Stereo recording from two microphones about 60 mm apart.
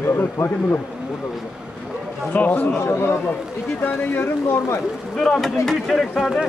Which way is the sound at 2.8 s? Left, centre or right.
Left.